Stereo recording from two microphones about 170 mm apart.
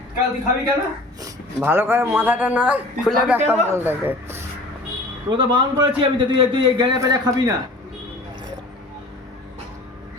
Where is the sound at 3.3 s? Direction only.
15° right (ahead or behind).